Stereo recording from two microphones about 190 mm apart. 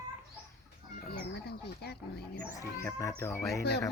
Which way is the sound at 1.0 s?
55° left (ahead or behind).